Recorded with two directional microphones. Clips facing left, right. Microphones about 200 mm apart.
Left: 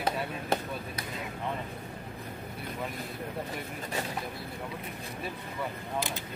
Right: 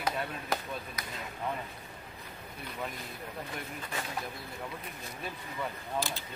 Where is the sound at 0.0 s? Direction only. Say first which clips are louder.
Left 2 dB; 30° left (ahead or behind).